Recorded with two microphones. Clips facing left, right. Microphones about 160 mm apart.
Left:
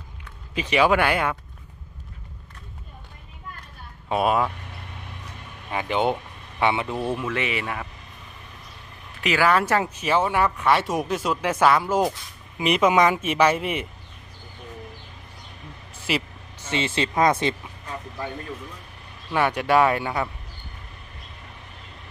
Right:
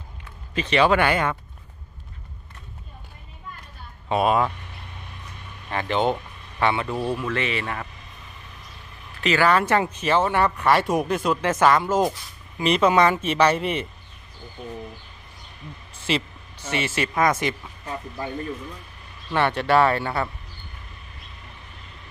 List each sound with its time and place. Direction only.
0.6 s speech: 10° left (ahead or behind)
4.1 s speech: 5° left (ahead or behind)
5.7 s speech: 10° left (ahead or behind)
9.2 s speech: 10° left (ahead or behind)
16.1 s speech: 5° left (ahead or behind)
16.7 s speech: 20° left (ahead or behind)
19.3 s speech: 10° left (ahead or behind)